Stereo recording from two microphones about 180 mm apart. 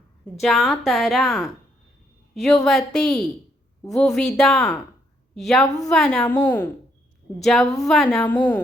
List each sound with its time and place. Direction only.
0.4 s a woman's voice: centre (ahead or behind)
5.6 s a woman's voice: 20° left (ahead or behind)
5.9 s a woman's voice: centre (ahead or behind)